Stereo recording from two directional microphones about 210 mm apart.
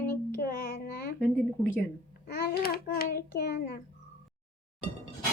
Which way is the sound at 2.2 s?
50° left (ahead or behind).